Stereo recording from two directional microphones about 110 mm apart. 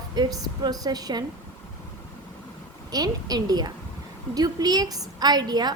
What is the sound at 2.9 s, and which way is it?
A woman's voice, 35° right (ahead or behind).